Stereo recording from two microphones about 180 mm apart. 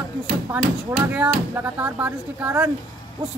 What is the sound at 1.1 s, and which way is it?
A man's voice, 10° right (ahead or behind).